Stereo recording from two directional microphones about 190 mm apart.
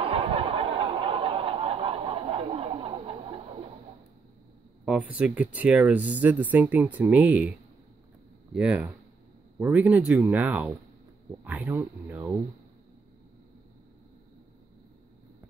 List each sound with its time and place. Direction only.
0.0 s snicker: 30° right (ahead or behind)
4.8 s speech: 5° right (ahead or behind)
8.5 s speech: 5° right (ahead or behind)
11.4 s a sound: 10° right (ahead or behind)